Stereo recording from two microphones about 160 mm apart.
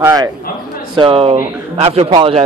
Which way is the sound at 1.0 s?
35° right (ahead or behind).